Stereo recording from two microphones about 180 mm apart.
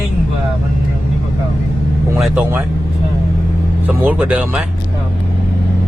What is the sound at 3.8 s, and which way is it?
Speech, 5° right (ahead or behind).